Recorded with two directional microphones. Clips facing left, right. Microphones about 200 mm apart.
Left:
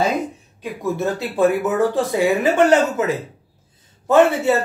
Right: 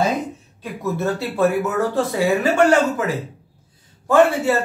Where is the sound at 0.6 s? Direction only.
15° left (ahead or behind).